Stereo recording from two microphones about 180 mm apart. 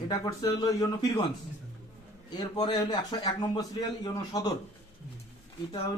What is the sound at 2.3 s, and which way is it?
A man's voice, 20° left (ahead or behind).